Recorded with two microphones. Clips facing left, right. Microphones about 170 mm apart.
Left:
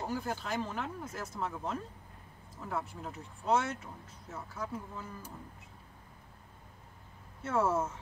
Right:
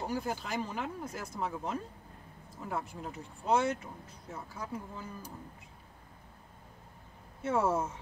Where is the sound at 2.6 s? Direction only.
5° right (ahead or behind).